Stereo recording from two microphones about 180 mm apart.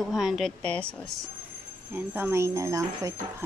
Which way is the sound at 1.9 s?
10° right (ahead or behind).